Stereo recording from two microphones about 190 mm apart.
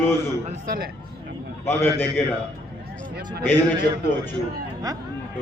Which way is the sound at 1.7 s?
10° left (ahead or behind).